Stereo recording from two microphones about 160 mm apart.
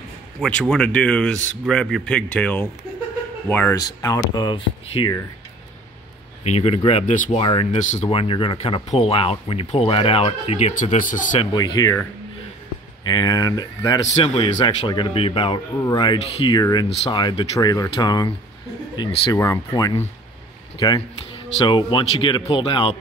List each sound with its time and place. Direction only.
0.4 s speech: 5° left (ahead or behind)
4.0 s speech: 25° left (ahead or behind)
6.4 s speech: 45° left (ahead or behind)
8.1 s speech: 35° left (ahead or behind)
10.7 s speech: 55° left (ahead or behind)
11.5 s speech: 25° left (ahead or behind)
13.0 s speech: 25° left (ahead or behind)
14.1 s speech: 35° left (ahead or behind)
19.3 s speech: 20° left (ahead or behind)